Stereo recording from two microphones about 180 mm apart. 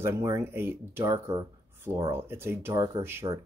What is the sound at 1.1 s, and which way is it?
Speech, 30° right (ahead or behind).